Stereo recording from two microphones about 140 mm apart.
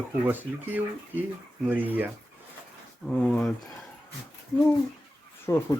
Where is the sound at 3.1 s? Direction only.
5° left (ahead or behind).